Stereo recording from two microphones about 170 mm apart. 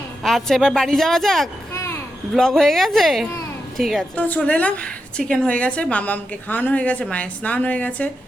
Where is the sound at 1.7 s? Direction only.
15° left (ahead or behind).